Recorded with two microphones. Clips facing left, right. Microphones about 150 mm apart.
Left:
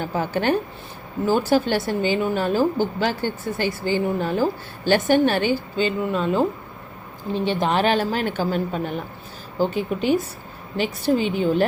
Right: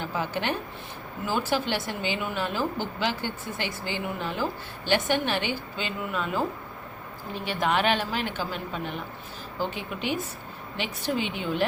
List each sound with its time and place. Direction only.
0.0 s a woman's voice: 45° left (ahead or behind)